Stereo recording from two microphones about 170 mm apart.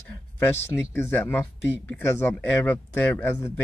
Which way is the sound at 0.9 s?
10° left (ahead or behind).